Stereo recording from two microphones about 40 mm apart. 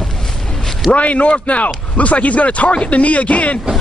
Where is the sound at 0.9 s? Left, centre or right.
Left.